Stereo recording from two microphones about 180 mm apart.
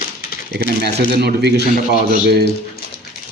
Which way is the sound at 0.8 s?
65° right (ahead or behind).